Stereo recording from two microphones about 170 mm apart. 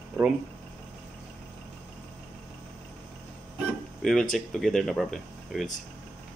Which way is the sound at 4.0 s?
5° left (ahead or behind).